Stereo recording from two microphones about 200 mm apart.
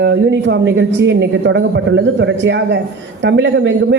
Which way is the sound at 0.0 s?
60° right (ahead or behind).